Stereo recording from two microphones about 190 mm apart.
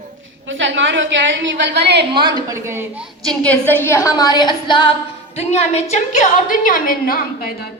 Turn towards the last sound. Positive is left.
turn(degrees=50)  # may be behind; listen again after turning